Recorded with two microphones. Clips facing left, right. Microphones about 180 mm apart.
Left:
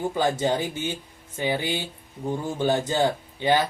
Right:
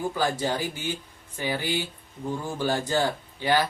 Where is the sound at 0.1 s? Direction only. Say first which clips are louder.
Left 3 dB; 20° left (ahead or behind).